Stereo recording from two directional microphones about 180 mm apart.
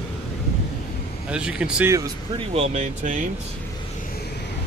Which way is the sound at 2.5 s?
35° right (ahead or behind).